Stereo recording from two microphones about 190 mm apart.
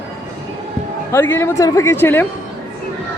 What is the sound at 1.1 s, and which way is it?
Speech, 10° left (ahead or behind).